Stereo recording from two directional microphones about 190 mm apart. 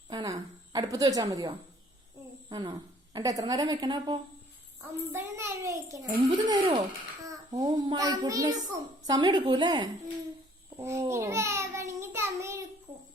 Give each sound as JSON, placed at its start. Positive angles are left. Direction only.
{"t": 0.1, "sound": "a woman's voice", "side_deg": -20}
{"t": 7.3, "sound": "child singing", "side_deg": -20}
{"t": 9.0, "sound": "a woman's voice", "side_deg": -20}
{"t": 10.8, "sound": "a sound", "side_deg": -15}